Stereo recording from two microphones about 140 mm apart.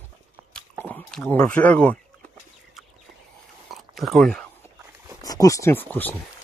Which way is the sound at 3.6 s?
Centre (ahead or behind).